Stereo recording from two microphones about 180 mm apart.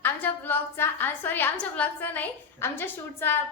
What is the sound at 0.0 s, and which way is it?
A woman's voice, 10° left (ahead or behind).